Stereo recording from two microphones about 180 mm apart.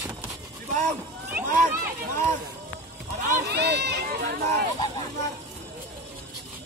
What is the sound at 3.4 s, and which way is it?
Speech, 70° right (ahead or behind).